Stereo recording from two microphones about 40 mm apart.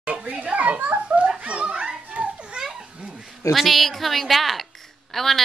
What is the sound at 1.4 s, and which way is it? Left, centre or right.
Children playing, right.